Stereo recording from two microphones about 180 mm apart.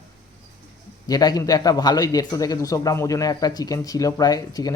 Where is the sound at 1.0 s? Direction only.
20° left (ahead or behind).